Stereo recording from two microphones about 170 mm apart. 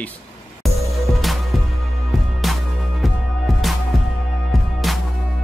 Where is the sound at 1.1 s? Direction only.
Centre (ahead or behind).